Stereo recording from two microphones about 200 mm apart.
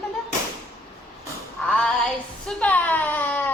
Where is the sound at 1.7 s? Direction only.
5° left (ahead or behind).